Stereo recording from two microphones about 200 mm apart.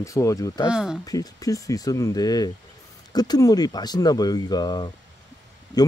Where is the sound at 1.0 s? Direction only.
20° left (ahead or behind).